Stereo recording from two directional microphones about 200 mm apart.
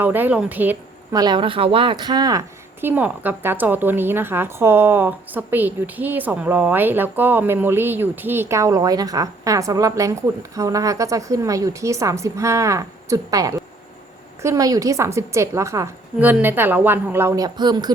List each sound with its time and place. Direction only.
0.0 s speech: 10° right (ahead or behind)
1.2 s speech: 25° right (ahead or behind)
2.8 s a woman's voice: 10° right (ahead or behind)